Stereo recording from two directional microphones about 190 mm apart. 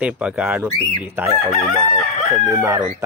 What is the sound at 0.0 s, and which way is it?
Speech, 5° right (ahead or behind).